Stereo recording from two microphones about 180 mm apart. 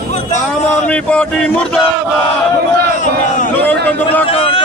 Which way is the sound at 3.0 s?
45° left (ahead or behind).